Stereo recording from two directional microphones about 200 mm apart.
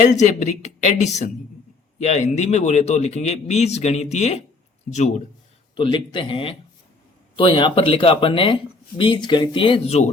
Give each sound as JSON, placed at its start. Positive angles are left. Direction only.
{"t": 0.0, "sound": "speech", "side_deg": 35}
{"t": 5.7, "sound": "speech", "side_deg": 25}